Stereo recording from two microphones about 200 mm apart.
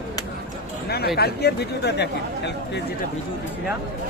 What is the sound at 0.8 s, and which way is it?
Speech, 55° left (ahead or behind).